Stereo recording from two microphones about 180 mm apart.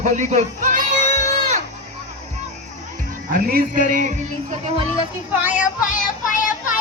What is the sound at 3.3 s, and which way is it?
Music, 50° right (ahead or behind).